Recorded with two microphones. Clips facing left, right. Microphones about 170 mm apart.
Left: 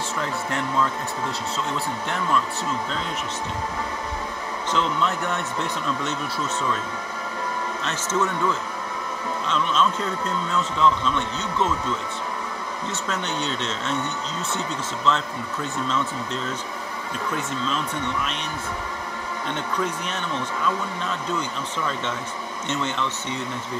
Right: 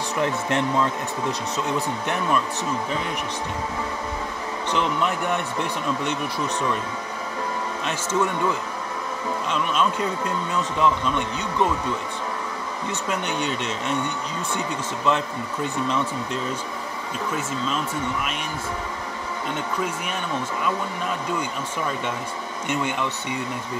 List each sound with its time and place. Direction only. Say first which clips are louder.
0.2 s speech: right 6 dB; 20° right (ahead or behind)
4.7 s speech: even; 15° right (ahead or behind)
7.8 s speech: right 1 dB; 10° right (ahead or behind)
13.1 s speech: right 2 dB; 10° right (ahead or behind)
19.5 s speech: left 1 dB; 10° right (ahead or behind)
21.3 s speech: right 1 dB; 10° right (ahead or behind)